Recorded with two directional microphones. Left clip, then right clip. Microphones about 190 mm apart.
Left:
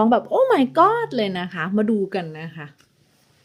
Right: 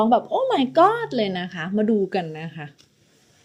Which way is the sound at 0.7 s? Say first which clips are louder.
Left 1 dB; centre (ahead or behind).